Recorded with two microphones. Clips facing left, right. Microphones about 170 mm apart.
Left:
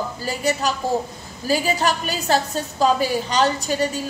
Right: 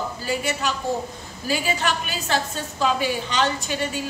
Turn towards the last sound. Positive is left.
turn(degrees=40)  # may be behind; listen again after turning